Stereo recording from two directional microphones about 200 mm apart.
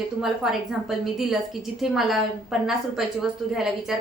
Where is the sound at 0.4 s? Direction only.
Centre (ahead or behind).